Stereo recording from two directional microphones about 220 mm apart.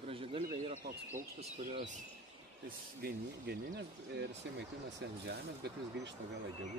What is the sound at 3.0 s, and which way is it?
Speech, 45° right (ahead or behind).